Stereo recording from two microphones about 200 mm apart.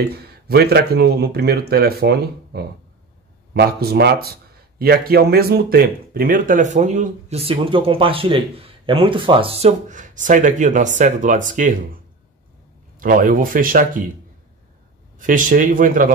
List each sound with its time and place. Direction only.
0.1 s a man's voice: 50° right (ahead or behind)
13.0 s speech: 45° right (ahead or behind)
15.1 s speech: 40° right (ahead or behind)